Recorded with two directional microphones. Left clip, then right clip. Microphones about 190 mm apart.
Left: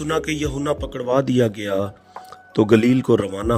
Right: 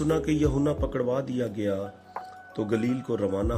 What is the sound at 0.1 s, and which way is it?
Speech, 45° left (ahead or behind).